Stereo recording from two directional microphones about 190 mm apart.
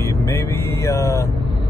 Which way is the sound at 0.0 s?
15° left (ahead or behind).